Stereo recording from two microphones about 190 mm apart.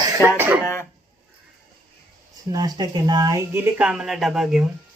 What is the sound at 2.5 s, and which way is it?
Speech, 20° right (ahead or behind).